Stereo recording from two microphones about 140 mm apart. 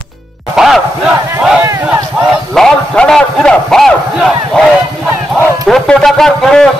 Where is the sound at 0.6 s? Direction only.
Centre (ahead or behind).